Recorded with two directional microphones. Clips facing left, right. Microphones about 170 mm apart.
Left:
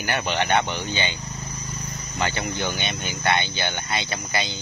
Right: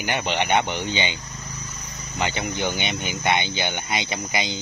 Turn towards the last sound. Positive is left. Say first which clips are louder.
# right 1 dB
turn(degrees=-15)  # may be behind; listen again after turning